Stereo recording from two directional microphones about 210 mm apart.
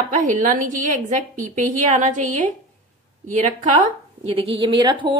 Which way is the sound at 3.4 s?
35° right (ahead or behind).